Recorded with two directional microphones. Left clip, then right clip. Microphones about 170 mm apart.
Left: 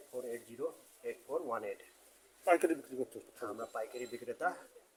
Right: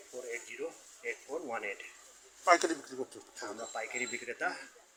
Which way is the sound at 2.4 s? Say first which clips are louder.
Right 3 dB; 50° left (ahead or behind).